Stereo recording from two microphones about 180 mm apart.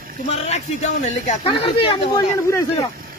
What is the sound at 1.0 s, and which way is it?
Speech, 35° left (ahead or behind).